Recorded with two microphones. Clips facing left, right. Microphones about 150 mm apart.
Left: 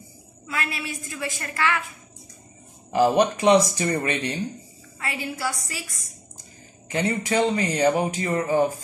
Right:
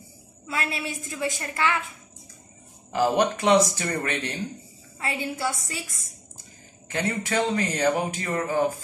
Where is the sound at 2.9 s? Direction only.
15° left (ahead or behind).